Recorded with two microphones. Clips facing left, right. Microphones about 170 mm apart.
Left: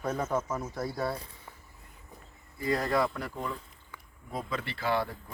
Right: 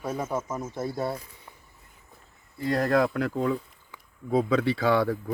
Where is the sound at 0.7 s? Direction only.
25° right (ahead or behind).